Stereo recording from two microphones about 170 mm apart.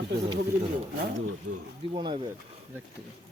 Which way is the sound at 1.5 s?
55° right (ahead or behind).